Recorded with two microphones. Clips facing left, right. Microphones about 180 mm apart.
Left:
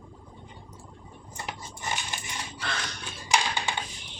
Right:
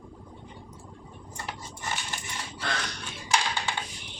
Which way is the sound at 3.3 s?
15° left (ahead or behind).